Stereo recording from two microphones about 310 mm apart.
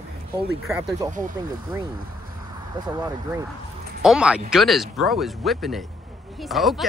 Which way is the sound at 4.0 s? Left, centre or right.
Centre.